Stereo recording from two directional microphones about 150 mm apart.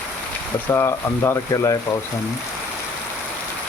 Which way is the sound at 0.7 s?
15° left (ahead or behind).